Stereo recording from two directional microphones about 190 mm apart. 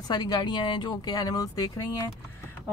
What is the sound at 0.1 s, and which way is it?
Speech, 20° left (ahead or behind).